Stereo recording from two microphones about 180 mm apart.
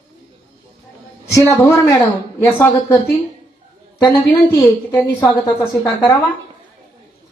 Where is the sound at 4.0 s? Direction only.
20° left (ahead or behind).